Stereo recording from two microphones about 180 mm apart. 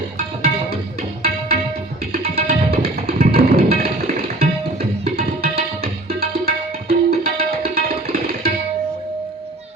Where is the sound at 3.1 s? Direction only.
55° right (ahead or behind).